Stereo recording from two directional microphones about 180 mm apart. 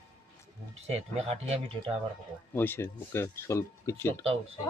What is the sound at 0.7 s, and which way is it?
Speech, 35° right (ahead or behind).